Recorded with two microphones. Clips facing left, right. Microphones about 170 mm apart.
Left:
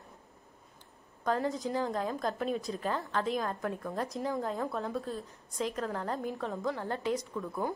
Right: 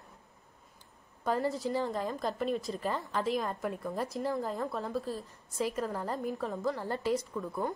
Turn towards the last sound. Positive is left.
turn(degrees=0)  # may be behind; listen again after turning